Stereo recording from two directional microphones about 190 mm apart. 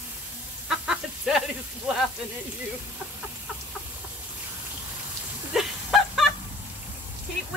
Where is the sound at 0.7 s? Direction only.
Centre (ahead or behind).